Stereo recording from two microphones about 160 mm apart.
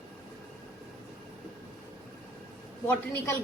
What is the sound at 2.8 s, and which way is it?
Speech, 10° left (ahead or behind).